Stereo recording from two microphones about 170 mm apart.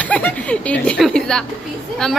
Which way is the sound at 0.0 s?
10° left (ahead or behind).